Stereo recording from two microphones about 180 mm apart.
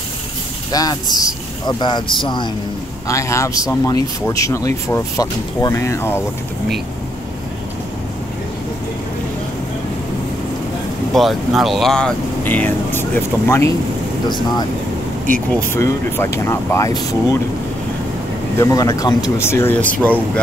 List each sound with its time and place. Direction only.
0.7 s speech: 20° left (ahead or behind)
11.1 s speech: centre (ahead or behind)
15.5 s speech: 15° left (ahead or behind)
18.6 s speech: 20° left (ahead or behind)